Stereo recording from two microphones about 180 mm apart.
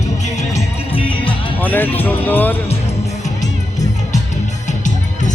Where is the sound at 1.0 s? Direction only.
10° left (ahead or behind).